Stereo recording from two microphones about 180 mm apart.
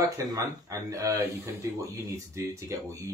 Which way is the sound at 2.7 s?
15° right (ahead or behind).